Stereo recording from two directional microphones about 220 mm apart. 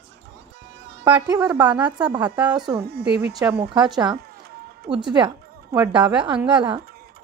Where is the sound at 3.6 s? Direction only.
20° right (ahead or behind).